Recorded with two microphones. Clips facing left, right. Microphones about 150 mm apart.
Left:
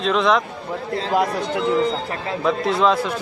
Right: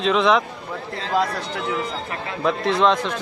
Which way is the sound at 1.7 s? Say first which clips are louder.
Left 6 dB; 35° left (ahead or behind).